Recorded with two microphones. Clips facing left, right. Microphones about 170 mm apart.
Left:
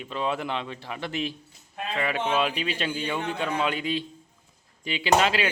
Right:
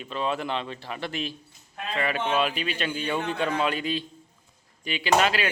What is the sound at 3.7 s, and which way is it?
A man's voice, 15° left (ahead or behind).